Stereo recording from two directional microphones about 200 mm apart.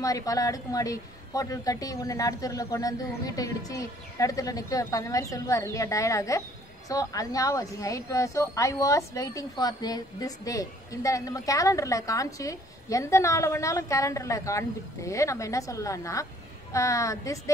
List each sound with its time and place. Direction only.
0.0 s a woman's voice: 15° left (ahead or behind)